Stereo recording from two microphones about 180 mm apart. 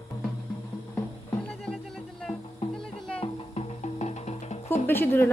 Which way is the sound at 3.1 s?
35° left (ahead or behind).